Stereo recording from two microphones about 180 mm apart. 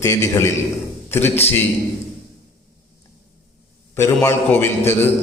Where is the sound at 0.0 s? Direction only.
15° left (ahead or behind).